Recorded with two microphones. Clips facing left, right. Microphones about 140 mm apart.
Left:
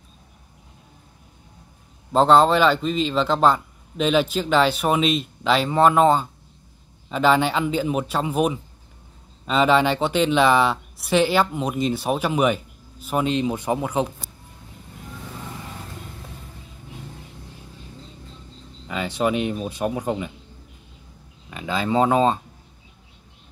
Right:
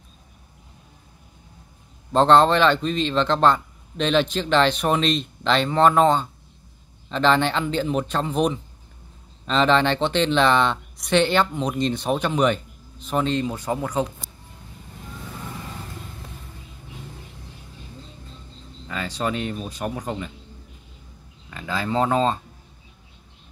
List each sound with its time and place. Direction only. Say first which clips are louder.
2.1 s speech: even; 5° left (ahead or behind)
18.9 s speech: left 4 dB; 20° left (ahead or behind)
21.5 s speech: left 3 dB; 15° left (ahead or behind)